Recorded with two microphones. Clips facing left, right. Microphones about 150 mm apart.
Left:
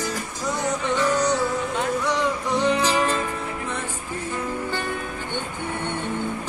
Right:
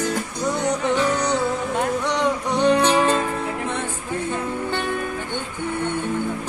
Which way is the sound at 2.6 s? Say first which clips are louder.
Right 5 dB; 65° right (ahead or behind).